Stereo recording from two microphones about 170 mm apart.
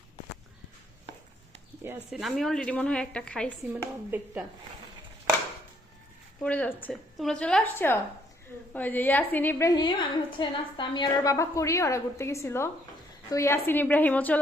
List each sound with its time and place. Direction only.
2.0 s a woman's voice: centre (ahead or behind)
3.7 s a woman's voice: 10° right (ahead or behind)
6.4 s a woman's voice: 10° left (ahead or behind)